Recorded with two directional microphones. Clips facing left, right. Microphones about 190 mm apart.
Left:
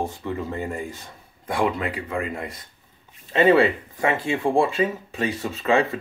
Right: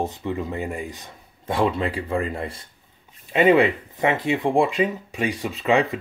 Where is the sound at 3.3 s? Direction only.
15° right (ahead or behind).